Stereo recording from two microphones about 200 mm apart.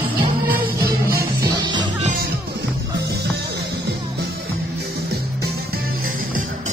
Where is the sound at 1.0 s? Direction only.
50° right (ahead or behind).